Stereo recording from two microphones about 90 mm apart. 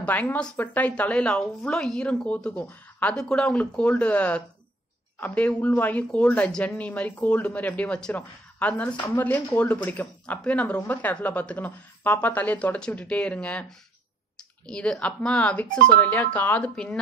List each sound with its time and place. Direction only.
0.0 s a woman's voice: 15° left (ahead or behind)
14.7 s a woman's voice: 10° left (ahead or behind)